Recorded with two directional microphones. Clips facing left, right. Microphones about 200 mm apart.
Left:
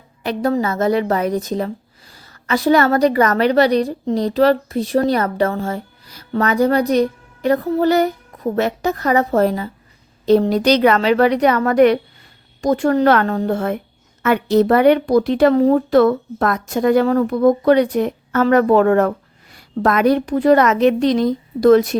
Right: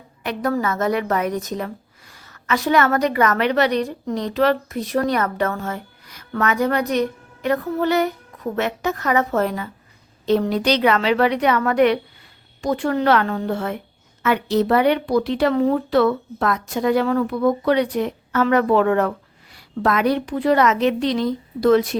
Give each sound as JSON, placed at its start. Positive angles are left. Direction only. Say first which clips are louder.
{"t": 0.2, "sound": "a woman's voice", "louder": "left 4 dB", "side_deg": 30}